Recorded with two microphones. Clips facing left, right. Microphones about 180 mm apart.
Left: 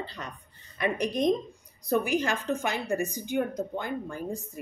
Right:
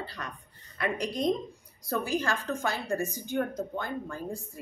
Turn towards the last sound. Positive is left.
turn(degrees=20)  # may be behind; listen again after turning